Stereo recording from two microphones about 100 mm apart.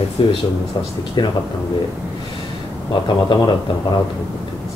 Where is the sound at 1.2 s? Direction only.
45° left (ahead or behind).